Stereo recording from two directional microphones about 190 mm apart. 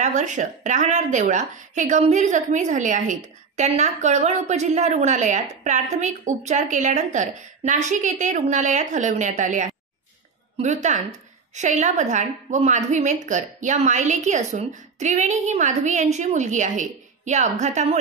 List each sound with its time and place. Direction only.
0.0 s a woman's voice: 40° right (ahead or behind)